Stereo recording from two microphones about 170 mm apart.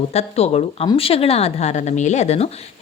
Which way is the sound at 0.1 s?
40° left (ahead or behind).